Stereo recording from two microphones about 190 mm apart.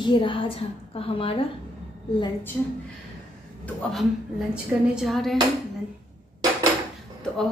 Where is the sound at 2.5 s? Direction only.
10° left (ahead or behind).